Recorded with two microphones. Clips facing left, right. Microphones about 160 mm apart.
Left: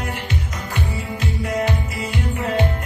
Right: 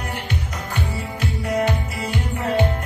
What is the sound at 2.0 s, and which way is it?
Music, 30° right (ahead or behind).